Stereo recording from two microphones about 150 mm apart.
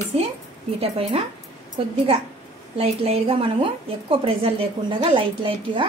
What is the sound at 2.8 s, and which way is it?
A woman's voice, 40° right (ahead or behind).